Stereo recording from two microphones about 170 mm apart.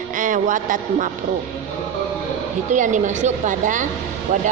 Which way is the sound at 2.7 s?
45° right (ahead or behind).